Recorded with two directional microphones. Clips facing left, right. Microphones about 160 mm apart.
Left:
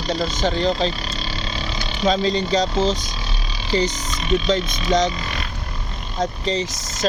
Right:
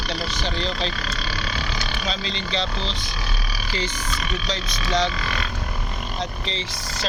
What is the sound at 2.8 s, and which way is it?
Speech, 45° left (ahead or behind).